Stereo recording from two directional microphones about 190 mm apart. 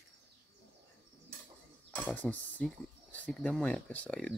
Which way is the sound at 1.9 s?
5° left (ahead or behind).